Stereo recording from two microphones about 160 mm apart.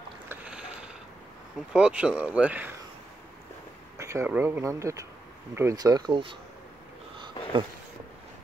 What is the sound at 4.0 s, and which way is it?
Speech, 15° right (ahead or behind).